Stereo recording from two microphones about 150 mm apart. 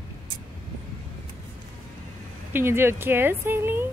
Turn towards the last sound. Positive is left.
turn(degrees=-15)  # may be behind; listen again after turning